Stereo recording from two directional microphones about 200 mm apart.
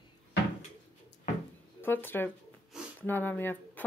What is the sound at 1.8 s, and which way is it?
Speech, 10° left (ahead or behind).